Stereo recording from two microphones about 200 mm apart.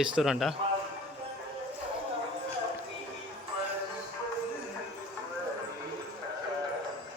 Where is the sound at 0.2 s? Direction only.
Centre (ahead or behind).